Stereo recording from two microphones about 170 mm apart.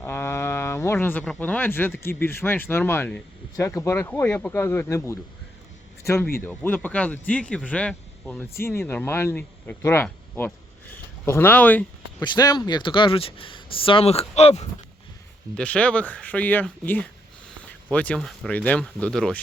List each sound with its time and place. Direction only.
0.0 s speech: 15° left (ahead or behind)
6.4 s speech: 10° left (ahead or behind)
12.2 s speech: 25° left (ahead or behind)
15.5 s speech: 5° left (ahead or behind)